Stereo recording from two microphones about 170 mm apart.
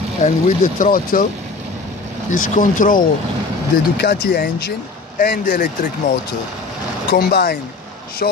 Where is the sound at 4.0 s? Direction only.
70° left (ahead or behind).